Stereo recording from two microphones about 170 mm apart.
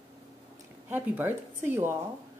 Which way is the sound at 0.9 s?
10° right (ahead or behind).